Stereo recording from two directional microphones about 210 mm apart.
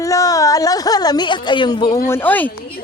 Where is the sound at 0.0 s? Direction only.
15° left (ahead or behind).